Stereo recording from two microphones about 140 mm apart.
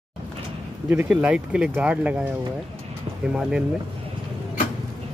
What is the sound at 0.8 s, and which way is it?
Speech, 10° right (ahead or behind).